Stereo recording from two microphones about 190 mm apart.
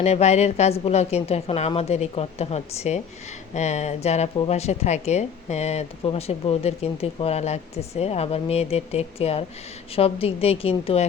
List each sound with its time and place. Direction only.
0.0 s speech: 35° left (ahead or behind)